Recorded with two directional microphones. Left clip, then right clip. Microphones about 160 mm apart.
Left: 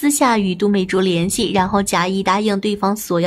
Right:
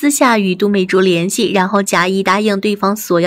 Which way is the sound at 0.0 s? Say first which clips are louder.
Right 4 dB; 20° right (ahead or behind).